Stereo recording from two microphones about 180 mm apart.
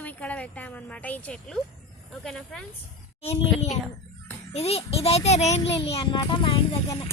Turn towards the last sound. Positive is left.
turn(degrees=30)  # may be behind; listen again after turning